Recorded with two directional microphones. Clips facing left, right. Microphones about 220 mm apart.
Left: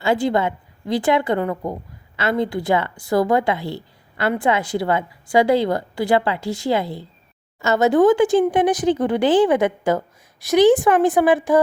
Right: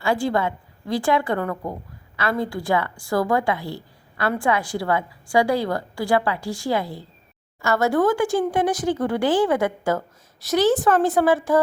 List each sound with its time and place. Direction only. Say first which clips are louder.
0.0 s a woman's voice: left 3 dB; 20° left (ahead or behind)